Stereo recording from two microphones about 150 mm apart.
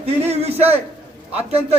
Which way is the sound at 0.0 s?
45° right (ahead or behind).